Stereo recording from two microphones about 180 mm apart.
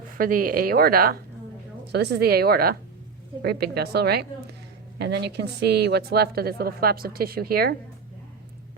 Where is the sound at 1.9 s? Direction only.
70° right (ahead or behind).